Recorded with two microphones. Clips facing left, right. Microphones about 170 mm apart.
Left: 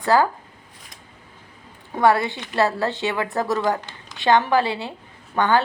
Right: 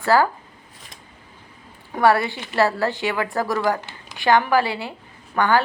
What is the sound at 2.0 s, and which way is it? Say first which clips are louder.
A woman's voice: even; 20° left (ahead or behind).